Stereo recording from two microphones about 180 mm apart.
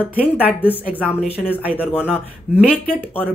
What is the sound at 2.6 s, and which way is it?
Speech, 5° left (ahead or behind).